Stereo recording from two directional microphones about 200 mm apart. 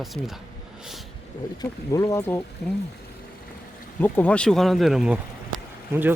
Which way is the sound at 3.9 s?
10° left (ahead or behind).